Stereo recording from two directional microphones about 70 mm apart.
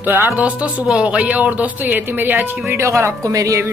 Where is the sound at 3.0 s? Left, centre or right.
Right.